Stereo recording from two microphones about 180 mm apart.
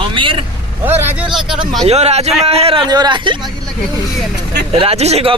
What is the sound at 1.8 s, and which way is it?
Speech, 35° right (ahead or behind).